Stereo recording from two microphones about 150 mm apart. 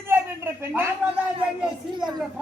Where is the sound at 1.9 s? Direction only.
30° right (ahead or behind).